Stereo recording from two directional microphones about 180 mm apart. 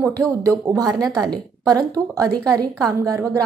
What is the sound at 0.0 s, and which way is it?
Speech, 15° right (ahead or behind).